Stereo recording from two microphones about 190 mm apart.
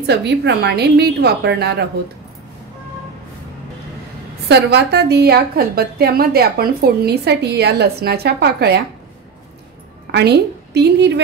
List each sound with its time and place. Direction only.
0.0 s a woman's voice: 65° right (ahead or behind)
4.5 s a woman's voice: 60° right (ahead or behind)
10.1 s a woman's voice: 60° right (ahead or behind)